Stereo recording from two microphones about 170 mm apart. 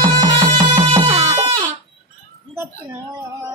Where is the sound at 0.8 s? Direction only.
30° right (ahead or behind).